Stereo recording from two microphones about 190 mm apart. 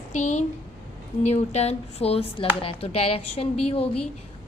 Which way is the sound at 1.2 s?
35° left (ahead or behind).